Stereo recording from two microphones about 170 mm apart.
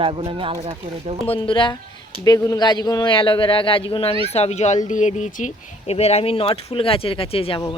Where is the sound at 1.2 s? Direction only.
30° left (ahead or behind).